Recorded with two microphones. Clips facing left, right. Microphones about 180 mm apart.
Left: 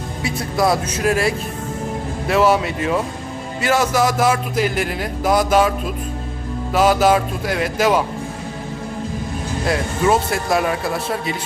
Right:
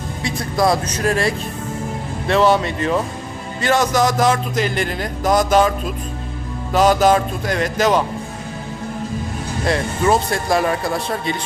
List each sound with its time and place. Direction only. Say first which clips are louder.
0.2 s speech: even; 5° left (ahead or behind)
9.6 s speech: even; 5° left (ahead or behind)